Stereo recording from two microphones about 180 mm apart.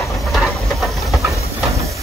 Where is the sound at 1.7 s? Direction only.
15° right (ahead or behind).